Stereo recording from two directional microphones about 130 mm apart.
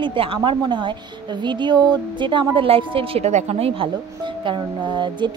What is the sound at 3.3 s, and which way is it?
A woman's voice, 60° right (ahead or behind).